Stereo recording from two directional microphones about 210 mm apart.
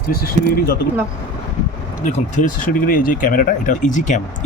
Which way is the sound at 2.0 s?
40° left (ahead or behind).